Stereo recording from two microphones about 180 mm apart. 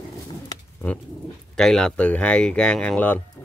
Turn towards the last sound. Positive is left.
turn(degrees=10)  # may be behind; listen again after turning